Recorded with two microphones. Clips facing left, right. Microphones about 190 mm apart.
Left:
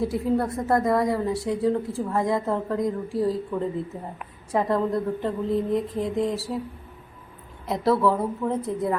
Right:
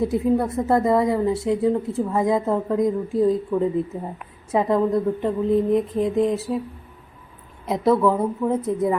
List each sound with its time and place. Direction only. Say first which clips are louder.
0.0 s a woman's voice: right 4 dB; 20° right (ahead or behind)
7.7 s a woman's voice: right 3 dB; 20° right (ahead or behind)